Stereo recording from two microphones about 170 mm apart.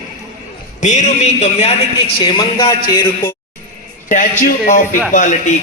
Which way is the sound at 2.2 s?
30° left (ahead or behind).